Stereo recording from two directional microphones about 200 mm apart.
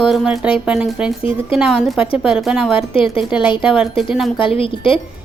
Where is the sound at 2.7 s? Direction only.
25° left (ahead or behind).